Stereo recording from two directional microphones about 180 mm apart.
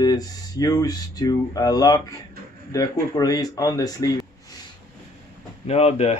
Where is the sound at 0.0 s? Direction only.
20° left (ahead or behind).